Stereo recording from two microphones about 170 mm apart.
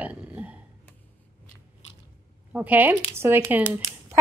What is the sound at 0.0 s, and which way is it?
Burping, 10° right (ahead or behind).